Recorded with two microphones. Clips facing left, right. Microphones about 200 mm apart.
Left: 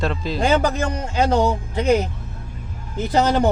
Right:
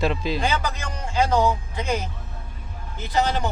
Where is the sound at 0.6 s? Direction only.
55° left (ahead or behind).